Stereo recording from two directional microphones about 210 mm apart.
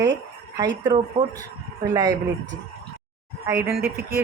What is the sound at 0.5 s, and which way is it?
A man's voice, 20° right (ahead or behind).